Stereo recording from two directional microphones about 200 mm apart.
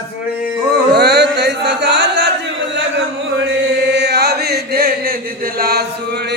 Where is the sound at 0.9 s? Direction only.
55° right (ahead or behind).